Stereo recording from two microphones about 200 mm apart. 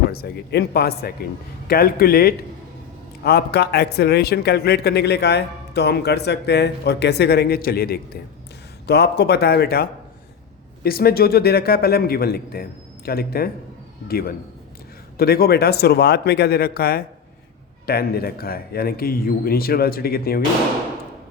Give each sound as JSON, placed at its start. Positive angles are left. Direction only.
{"t": 0.1, "sound": "a man's voice", "side_deg": 50}